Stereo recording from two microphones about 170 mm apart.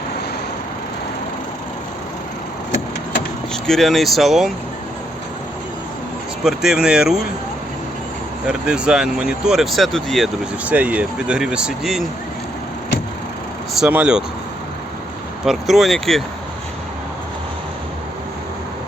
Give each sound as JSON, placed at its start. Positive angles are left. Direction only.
{"t": 3.5, "sound": "speech", "side_deg": 0}
{"t": 6.4, "sound": "speech", "side_deg": -5}
{"t": 8.4, "sound": "speech", "side_deg": -5}
{"t": 13.7, "sound": "speech", "side_deg": -5}
{"t": 15.4, "sound": "speech", "side_deg": 0}